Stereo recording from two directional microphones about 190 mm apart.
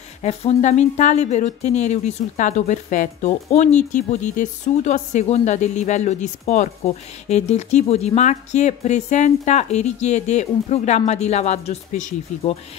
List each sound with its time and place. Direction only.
0.2 s speech: 35° left (ahead or behind)